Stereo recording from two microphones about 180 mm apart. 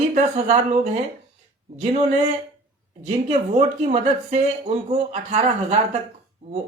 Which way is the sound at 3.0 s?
35° right (ahead or behind).